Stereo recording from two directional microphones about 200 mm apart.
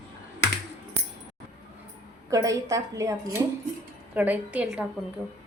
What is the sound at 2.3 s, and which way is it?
Speech, 15° right (ahead or behind).